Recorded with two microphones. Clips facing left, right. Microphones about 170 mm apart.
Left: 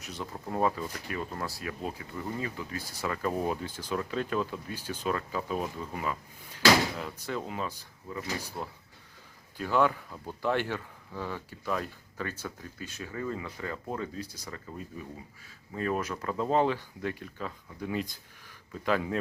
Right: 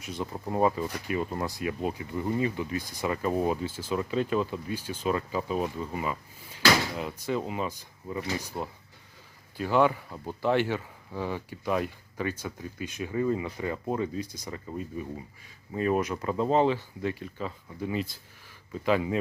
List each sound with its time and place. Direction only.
0.2 s speech: 15° right (ahead or behind)